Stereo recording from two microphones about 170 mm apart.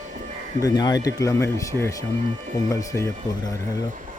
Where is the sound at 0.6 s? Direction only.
25° left (ahead or behind).